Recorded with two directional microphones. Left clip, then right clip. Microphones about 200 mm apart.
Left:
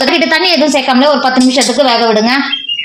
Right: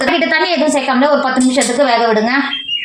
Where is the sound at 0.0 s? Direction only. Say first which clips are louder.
Left 3 dB; 50° left (ahead or behind).